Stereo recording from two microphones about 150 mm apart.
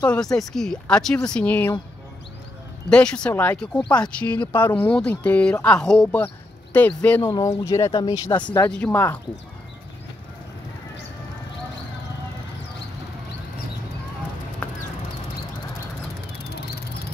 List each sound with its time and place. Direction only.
0.0 s speech: 5° left (ahead or behind)
2.9 s speech: 5° left (ahead or behind); by 8.6 s 30° left (ahead or behind)
8.6 s speech: 10° left (ahead or behind)
16.5 s vehicle: 90° left